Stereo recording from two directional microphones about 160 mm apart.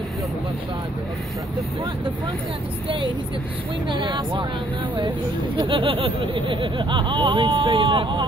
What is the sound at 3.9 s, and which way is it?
Speech, 30° right (ahead or behind).